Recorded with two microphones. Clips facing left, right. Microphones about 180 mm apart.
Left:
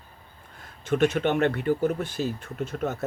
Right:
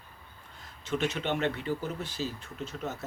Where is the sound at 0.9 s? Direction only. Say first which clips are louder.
Left 8 dB; 50° left (ahead or behind).